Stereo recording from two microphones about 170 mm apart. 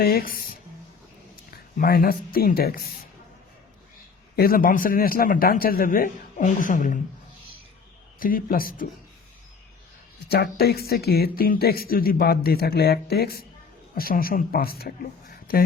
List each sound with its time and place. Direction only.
0.0 s speech: 60° left (ahead or behind)
4.4 s a man's voice: 60° left (ahead or behind)
8.2 s a man's voice: 55° left (ahead or behind)
10.2 s speech: 70° left (ahead or behind)